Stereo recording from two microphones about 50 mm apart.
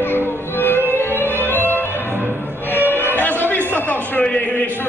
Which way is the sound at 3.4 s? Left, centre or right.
Left.